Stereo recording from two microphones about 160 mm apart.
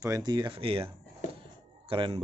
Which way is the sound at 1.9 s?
35° right (ahead or behind).